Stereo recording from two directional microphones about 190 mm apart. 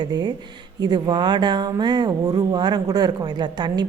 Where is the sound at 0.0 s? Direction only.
20° right (ahead or behind).